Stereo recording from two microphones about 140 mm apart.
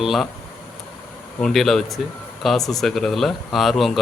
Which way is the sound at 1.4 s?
5° left (ahead or behind).